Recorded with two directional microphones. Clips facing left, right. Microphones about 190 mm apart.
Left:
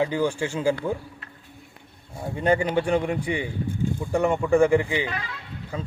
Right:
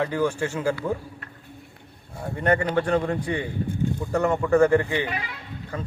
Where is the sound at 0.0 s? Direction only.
15° left (ahead or behind).